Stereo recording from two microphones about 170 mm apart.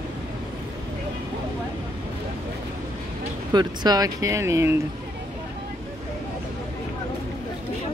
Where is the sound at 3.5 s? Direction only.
25° right (ahead or behind).